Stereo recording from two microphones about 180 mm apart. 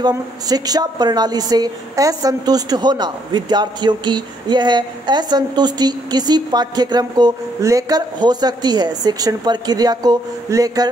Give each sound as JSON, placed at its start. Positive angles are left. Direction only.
{"t": 0.0, "sound": "a woman's voice", "side_deg": -20}